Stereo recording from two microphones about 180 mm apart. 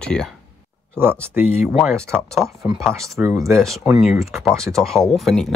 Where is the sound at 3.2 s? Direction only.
15° right (ahead or behind).